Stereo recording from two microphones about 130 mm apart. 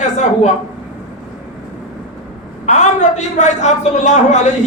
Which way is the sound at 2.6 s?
65° left (ahead or behind).